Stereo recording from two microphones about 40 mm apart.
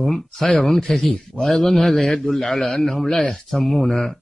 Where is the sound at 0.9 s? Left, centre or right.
Centre.